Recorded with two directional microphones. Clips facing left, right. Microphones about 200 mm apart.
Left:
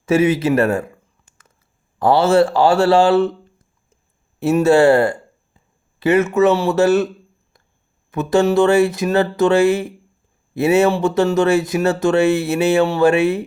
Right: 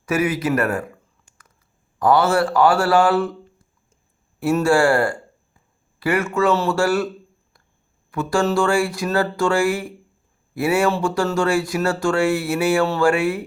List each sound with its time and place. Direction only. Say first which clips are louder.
0.0 s a sound: left 6 dB; 25° left (ahead or behind)
2.0 s speech: left 4 dB; 25° left (ahead or behind)
4.4 s speech: left 4 dB; 25° left (ahead or behind)
8.1 s speech: left 5 dB; 20° left (ahead or behind)